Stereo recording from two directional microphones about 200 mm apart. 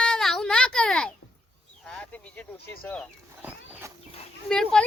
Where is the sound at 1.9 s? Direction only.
5° left (ahead or behind).